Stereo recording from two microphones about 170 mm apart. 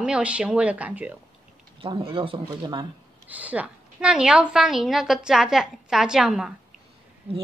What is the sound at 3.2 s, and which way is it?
A woman's voice, 10° right (ahead or behind).